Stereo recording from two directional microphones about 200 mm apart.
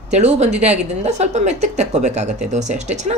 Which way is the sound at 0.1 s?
35° right (ahead or behind).